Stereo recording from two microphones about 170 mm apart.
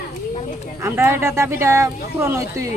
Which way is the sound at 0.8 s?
15° right (ahead or behind).